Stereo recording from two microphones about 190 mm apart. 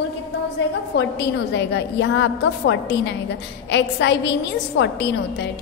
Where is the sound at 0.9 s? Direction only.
65° left (ahead or behind).